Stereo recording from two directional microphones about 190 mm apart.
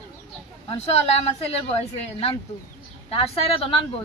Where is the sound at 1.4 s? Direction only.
30° left (ahead or behind).